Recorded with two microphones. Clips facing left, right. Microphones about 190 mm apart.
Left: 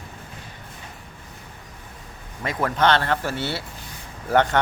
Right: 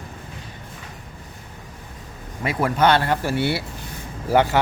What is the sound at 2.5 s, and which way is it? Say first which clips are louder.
A man's voice: right 2 dB; 10° right (ahead or behind).